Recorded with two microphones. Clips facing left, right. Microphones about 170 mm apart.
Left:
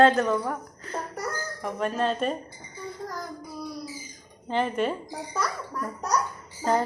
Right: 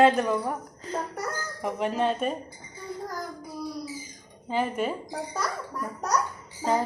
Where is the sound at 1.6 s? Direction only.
15° right (ahead or behind).